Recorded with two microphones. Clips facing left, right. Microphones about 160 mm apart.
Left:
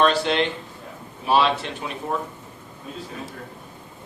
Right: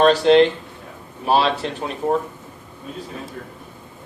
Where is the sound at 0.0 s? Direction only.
35° right (ahead or behind).